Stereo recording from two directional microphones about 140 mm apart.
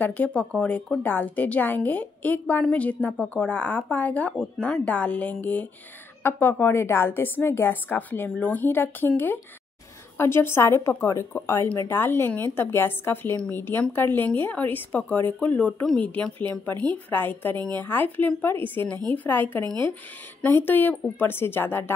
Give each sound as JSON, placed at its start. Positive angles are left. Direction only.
{"t": 0.0, "sound": "speech", "side_deg": 10}